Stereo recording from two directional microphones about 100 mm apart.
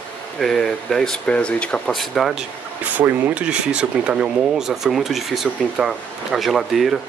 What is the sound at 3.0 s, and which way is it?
Speech, 10° right (ahead or behind).